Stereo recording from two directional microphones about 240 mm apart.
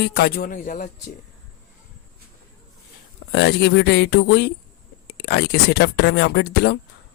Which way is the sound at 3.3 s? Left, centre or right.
Left.